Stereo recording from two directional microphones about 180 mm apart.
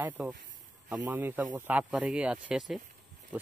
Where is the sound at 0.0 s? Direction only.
10° right (ahead or behind).